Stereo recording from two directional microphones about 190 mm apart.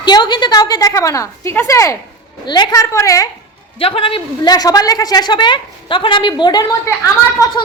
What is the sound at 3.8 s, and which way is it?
A woman's voice, 30° left (ahead or behind).